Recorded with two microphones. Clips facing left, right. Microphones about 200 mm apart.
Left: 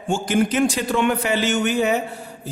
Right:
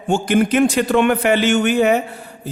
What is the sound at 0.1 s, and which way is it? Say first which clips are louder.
A man's voice: right 4 dB; 60° right (ahead or behind).